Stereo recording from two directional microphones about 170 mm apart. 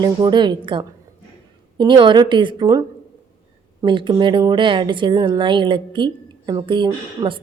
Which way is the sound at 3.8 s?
30° right (ahead or behind).